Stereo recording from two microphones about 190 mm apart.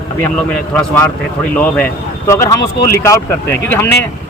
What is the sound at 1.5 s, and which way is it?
Speech, 10° left (ahead or behind).